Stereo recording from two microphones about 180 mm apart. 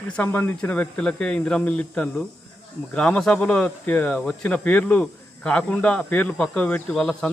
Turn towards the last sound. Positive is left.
turn(degrees=5)  # may be behind; listen again after turning